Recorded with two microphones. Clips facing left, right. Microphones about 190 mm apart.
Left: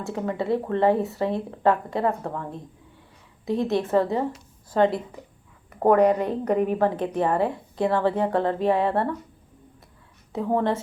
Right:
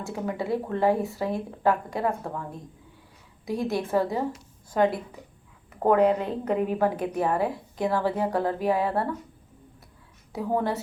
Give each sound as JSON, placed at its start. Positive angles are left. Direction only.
{"t": 0.0, "sound": "a woman's voice", "side_deg": -5}
{"t": 3.4, "sound": "a woman's voice", "side_deg": 20}
{"t": 3.8, "sound": "a woman's voice", "side_deg": -5}
{"t": 10.5, "sound": "a woman's voice", "side_deg": -5}